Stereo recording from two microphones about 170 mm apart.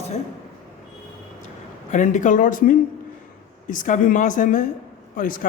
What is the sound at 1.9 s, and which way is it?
A man's voice, 45° left (ahead or behind).